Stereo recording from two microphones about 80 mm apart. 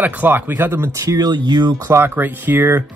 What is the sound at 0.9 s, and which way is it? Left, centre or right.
Speech, right.